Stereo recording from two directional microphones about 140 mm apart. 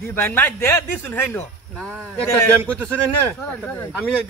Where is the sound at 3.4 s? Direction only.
10° left (ahead or behind).